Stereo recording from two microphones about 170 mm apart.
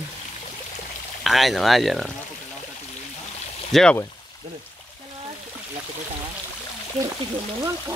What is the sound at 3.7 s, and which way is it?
Speech, 5° left (ahead or behind).